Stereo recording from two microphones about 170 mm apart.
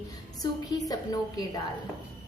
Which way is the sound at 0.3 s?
20° left (ahead or behind).